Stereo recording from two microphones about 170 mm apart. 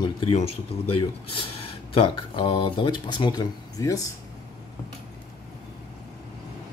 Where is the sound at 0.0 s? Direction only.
30° left (ahead or behind).